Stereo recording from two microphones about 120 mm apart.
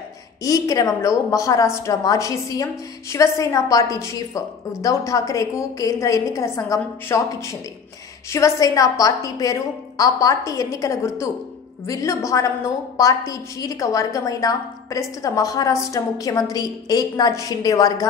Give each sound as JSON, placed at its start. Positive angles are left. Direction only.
{"t": 0.4, "sound": "a woman's voice", "side_deg": 30}